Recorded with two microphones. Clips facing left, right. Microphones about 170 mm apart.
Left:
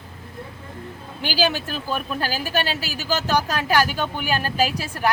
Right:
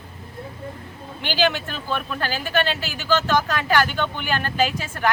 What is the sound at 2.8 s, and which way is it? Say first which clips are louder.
Speech: right 3 dB; 40° left (ahead or behind).